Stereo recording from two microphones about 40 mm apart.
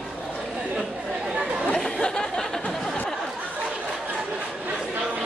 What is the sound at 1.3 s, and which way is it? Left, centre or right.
Chatter, right.